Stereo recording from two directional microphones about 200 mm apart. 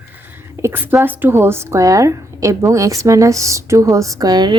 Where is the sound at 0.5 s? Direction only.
10° right (ahead or behind).